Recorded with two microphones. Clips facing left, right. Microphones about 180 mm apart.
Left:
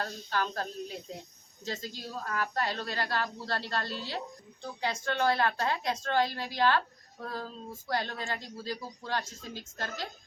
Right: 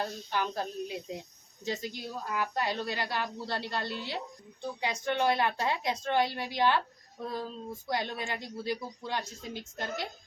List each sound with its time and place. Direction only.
0.0 s a woman's voice: 15° right (ahead or behind)